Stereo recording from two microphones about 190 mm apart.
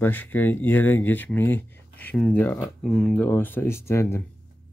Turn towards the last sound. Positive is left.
turn(degrees=15)  # may be behind; listen again after turning